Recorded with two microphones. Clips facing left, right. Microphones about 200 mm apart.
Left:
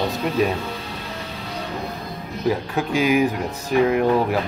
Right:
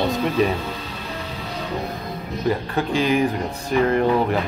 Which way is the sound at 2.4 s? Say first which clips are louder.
Even; 5° left (ahead or behind).